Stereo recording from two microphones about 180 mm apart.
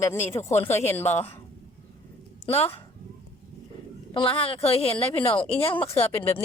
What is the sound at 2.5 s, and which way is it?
Speech, 35° left (ahead or behind).